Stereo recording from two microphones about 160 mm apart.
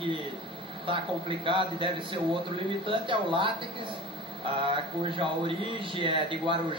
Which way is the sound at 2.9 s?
30° right (ahead or behind).